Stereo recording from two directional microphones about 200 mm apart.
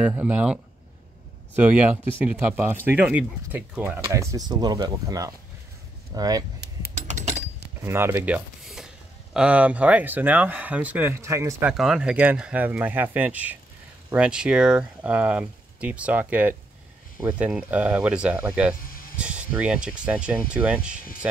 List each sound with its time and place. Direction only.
0.0 s speech: 5° right (ahead or behind)
7.0 s a sound: 35° right (ahead or behind)
7.8 s speech: 10° right (ahead or behind)
11.7 s speech: centre (ahead or behind)
18.8 s a sound: 45° left (ahead or behind)
19.1 s speech: 5° right (ahead or behind)